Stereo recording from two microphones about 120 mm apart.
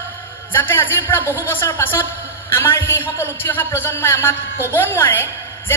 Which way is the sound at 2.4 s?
20° left (ahead or behind).